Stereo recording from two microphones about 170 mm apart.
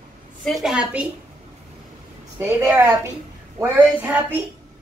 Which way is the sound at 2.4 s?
15° right (ahead or behind).